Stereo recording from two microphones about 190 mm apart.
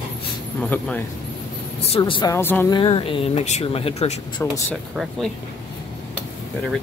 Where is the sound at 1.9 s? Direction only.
25° left (ahead or behind).